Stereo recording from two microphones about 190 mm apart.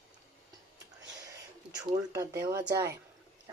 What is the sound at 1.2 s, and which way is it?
Speech, 20° right (ahead or behind).